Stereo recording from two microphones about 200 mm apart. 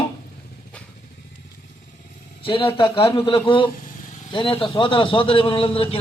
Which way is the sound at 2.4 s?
25° left (ahead or behind).